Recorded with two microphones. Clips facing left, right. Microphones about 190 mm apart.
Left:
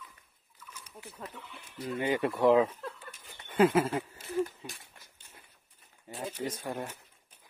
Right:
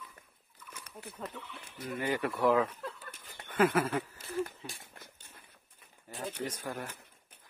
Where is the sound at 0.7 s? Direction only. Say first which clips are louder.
Right 2 dB; 60° right (ahead or behind).